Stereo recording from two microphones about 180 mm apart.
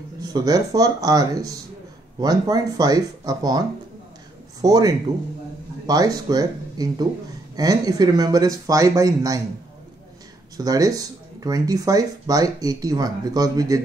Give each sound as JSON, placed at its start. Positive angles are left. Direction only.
{"t": 0.2, "sound": "speech", "side_deg": -20}
{"t": 10.6, "sound": "speech", "side_deg": -20}